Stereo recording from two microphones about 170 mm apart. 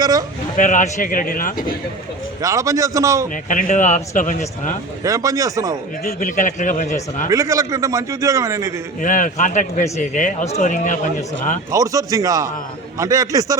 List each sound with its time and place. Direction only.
0.0 s speech: 20° right (ahead or behind)
0.5 s speech: 50° left (ahead or behind)
2.4 s a man's voice: 20° right (ahead or behind)
3.5 s speech: 50° left (ahead or behind)
5.0 s a man's voice: 20° right (ahead or behind)
6.1 s speech: 45° left (ahead or behind)
7.3 s a man's voice: 20° right (ahead or behind)
9.0 s speech: 50° left (ahead or behind)
11.7 s a man's voice: 20° right (ahead or behind)